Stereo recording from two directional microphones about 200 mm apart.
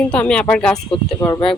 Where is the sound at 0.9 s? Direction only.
15° left (ahead or behind).